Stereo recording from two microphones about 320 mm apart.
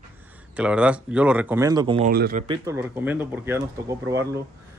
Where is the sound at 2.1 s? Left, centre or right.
Right.